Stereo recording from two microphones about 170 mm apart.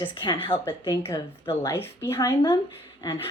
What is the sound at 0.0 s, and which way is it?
Speech, 30° left (ahead or behind).